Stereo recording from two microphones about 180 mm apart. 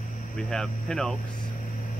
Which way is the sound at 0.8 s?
5° left (ahead or behind).